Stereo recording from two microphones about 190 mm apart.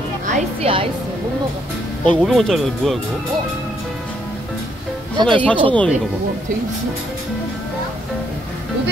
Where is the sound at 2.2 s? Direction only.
Centre (ahead or behind).